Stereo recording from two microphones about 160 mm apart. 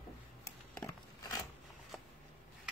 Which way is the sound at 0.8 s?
20° left (ahead or behind).